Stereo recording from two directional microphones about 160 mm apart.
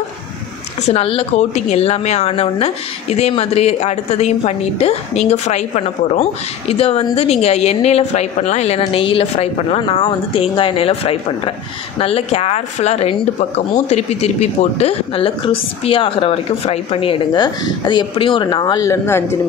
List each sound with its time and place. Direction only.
0.8 s a woman's voice: 40° left (ahead or behind); by 19.3 s 15° left (ahead or behind)